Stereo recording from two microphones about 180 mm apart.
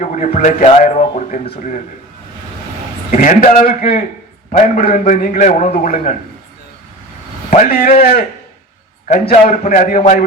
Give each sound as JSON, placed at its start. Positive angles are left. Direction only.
{"t": 0.0, "sound": "speech", "side_deg": 40}
{"t": 3.1, "sound": "a man's voice", "side_deg": 45}
{"t": 7.7, "sound": "a man's voice", "side_deg": 60}
{"t": 9.0, "sound": "a man's voice", "side_deg": 40}